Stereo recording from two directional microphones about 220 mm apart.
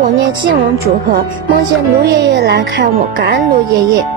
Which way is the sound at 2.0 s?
50° right (ahead or behind).